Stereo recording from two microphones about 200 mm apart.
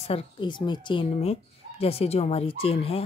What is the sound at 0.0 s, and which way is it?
Speech, 25° left (ahead or behind).